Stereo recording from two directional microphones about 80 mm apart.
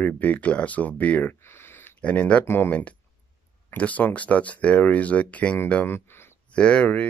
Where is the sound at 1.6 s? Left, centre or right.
Left.